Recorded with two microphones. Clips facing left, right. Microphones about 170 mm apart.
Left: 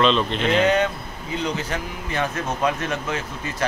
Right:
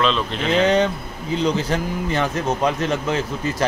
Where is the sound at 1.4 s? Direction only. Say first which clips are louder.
Right 6 dB; 35° right (ahead or behind).